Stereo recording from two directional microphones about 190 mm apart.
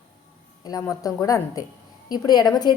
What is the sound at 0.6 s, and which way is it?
A woman's voice, 20° left (ahead or behind).